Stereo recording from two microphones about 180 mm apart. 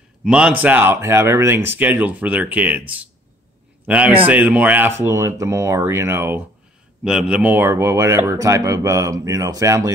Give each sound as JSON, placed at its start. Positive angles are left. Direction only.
{"t": 0.2, "sound": "speech", "side_deg": -5}